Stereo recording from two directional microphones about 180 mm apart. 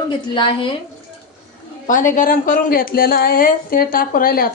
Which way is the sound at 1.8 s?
45° left (ahead or behind).